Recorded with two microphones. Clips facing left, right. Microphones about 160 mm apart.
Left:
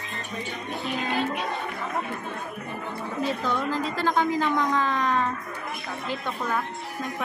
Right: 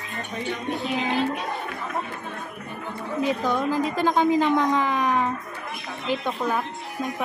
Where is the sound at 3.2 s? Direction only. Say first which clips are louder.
Right 4 dB; 15° right (ahead or behind).